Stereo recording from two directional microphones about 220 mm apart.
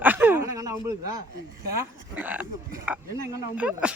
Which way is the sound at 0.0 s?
10° right (ahead or behind).